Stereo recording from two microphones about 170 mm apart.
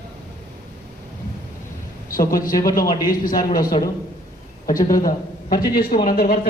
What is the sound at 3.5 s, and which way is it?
Speech, 25° left (ahead or behind).